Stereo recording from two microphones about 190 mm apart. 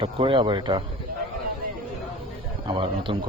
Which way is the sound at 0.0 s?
25° right (ahead or behind).